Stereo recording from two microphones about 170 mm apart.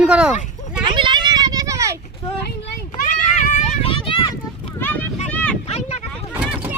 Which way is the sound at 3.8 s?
30° left (ahead or behind).